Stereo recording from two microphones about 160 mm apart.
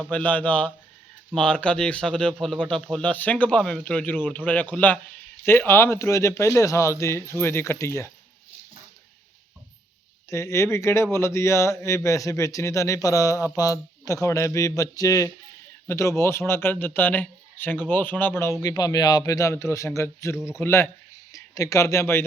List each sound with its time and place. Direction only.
0.0 s a man's voice: 10° left (ahead or behind)
10.2 s a man's voice: 20° left (ahead or behind)